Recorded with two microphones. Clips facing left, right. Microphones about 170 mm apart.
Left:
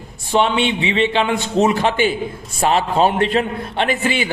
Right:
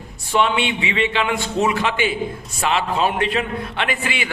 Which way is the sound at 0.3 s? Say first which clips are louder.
Left 3 dB; 30° left (ahead or behind).